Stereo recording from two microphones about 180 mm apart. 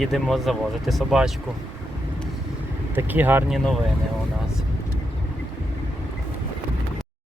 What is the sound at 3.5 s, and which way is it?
Speech, centre (ahead or behind).